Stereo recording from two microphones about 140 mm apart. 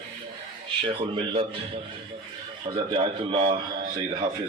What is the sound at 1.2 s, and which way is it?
Speech, 35° right (ahead or behind).